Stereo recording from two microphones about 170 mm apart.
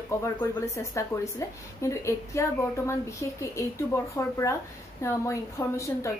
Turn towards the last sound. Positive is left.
turn(degrees=15)  # may be behind; listen again after turning